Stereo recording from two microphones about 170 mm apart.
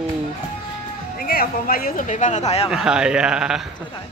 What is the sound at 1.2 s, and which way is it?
Speech, 60° left (ahead or behind).